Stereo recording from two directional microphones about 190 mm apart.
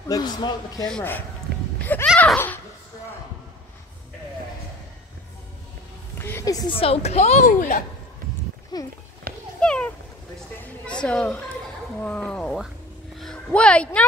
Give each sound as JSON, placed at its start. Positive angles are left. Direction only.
{"t": 0.0, "sound": "a man's voice", "side_deg": 20}
{"t": 0.8, "sound": "speech", "side_deg": 5}
{"t": 2.1, "sound": "a sound", "side_deg": 10}
{"t": 6.1, "sound": "a woman's voice", "side_deg": 10}
{"t": 8.7, "sound": "a man's voice", "side_deg": 20}
{"t": 9.3, "sound": "a sound", "side_deg": -50}
{"t": 9.6, "sound": "cat", "side_deg": 5}
{"t": 10.9, "sound": "speech", "side_deg": 5}